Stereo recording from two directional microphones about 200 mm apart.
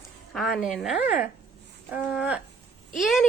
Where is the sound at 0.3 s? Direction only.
Centre (ahead or behind).